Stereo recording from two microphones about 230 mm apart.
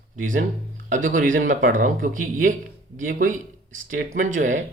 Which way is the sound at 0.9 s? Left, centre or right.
Right.